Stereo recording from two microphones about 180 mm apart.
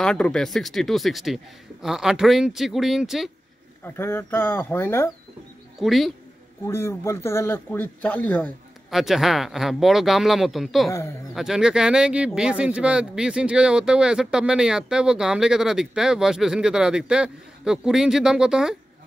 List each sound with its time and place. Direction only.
0.0 s speech: 5° left (ahead or behind)
3.8 s speech: 15° left (ahead or behind)
5.8 s speech: centre (ahead or behind)
6.6 s speech: 15° left (ahead or behind)
10.9 s speech: 15° left (ahead or behind)
11.3 s speech: 5° right (ahead or behind)